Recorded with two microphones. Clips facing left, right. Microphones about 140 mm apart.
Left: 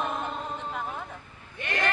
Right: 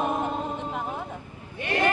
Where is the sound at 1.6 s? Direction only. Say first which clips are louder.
Right 5 dB; 20° right (ahead or behind).